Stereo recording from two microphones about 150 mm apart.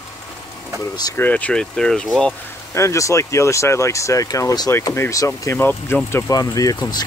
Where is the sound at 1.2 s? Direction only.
10° left (ahead or behind).